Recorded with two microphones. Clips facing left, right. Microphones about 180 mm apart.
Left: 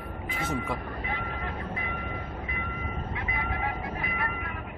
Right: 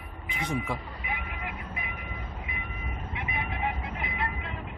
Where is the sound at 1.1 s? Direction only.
15° right (ahead or behind).